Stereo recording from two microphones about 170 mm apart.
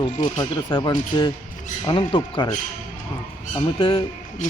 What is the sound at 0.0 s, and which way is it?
Speech, 25° left (ahead or behind).